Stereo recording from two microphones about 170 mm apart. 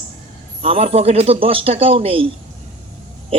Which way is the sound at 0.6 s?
35° right (ahead or behind).